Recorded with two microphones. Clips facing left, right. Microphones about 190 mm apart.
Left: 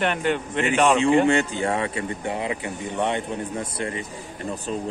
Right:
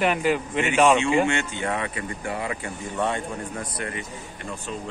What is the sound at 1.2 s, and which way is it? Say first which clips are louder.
Speech: left 5 dB; 35° left (ahead or behind).